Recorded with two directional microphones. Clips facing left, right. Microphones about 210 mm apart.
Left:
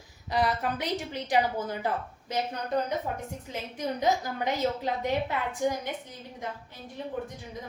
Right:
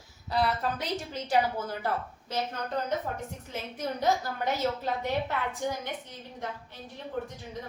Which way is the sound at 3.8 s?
15° left (ahead or behind).